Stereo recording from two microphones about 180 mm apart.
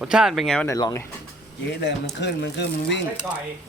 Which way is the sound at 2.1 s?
75° left (ahead or behind).